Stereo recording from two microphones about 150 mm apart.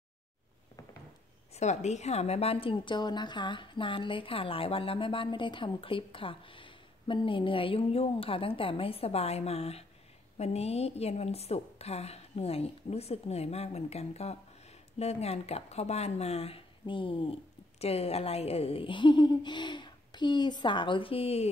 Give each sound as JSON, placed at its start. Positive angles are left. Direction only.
{"t": 1.5, "sound": "a woman's voice", "side_deg": 50}